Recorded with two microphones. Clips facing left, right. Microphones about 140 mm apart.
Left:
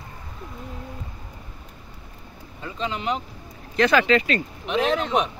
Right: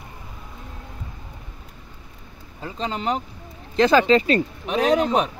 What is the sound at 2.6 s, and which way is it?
Speech, 35° right (ahead or behind).